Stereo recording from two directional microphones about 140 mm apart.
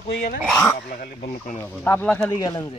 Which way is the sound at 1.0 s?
75° left (ahead or behind).